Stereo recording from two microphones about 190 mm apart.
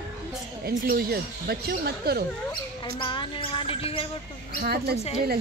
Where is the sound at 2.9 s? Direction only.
25° left (ahead or behind).